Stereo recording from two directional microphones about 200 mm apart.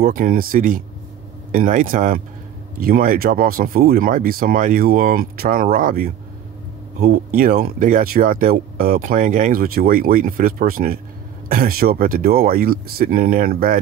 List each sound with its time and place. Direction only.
0.0 s speech: 45° right (ahead or behind)